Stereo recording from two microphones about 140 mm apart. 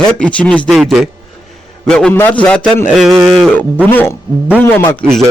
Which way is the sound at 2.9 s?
5° right (ahead or behind).